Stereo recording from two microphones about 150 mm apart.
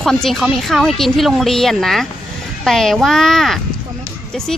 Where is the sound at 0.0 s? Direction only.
Centre (ahead or behind).